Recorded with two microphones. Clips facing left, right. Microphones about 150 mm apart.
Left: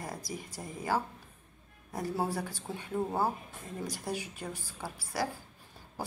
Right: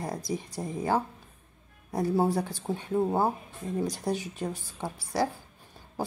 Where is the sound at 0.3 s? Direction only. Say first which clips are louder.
Right 8 dB; 25° right (ahead or behind).